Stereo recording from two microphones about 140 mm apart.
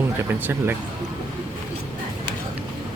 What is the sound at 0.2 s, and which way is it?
Speech, 15° right (ahead or behind).